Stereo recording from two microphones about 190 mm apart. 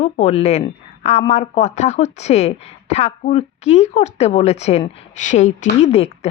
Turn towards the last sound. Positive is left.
turn(degrees=35)  # may be behind; listen again after turning